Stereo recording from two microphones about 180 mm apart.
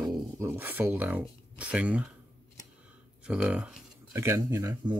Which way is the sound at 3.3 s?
5° right (ahead or behind).